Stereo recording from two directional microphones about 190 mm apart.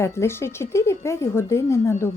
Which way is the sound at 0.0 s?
15° left (ahead or behind).